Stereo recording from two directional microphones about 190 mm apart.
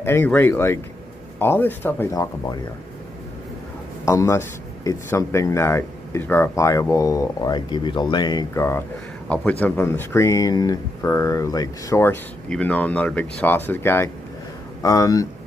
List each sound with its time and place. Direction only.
0.0 s a man's voice: 10° left (ahead or behind)
4.0 s a man's voice: 15° left (ahead or behind)